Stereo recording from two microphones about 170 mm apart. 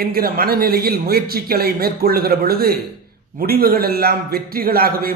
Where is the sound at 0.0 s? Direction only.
60° right (ahead or behind).